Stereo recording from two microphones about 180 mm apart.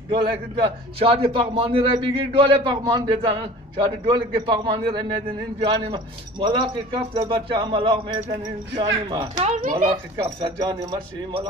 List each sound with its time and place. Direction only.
0.1 s a man's voice: 30° right (ahead or behind)
9.4 s speech: 50° right (ahead or behind)
10.1 s a man's voice: 25° right (ahead or behind)